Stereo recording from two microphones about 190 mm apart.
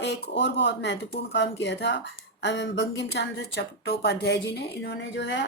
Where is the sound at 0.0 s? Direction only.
65° left (ahead or behind).